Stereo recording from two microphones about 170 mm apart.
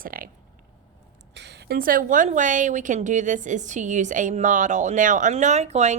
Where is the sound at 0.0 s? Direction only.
55° right (ahead or behind).